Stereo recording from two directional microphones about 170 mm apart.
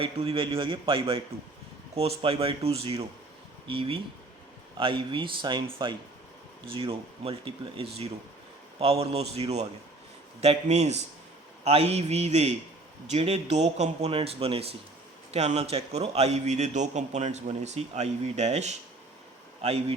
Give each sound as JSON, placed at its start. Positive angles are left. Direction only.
{"t": 0.0, "sound": "a man's voice", "side_deg": -35}